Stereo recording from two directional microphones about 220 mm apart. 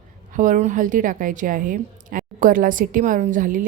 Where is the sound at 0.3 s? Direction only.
35° right (ahead or behind).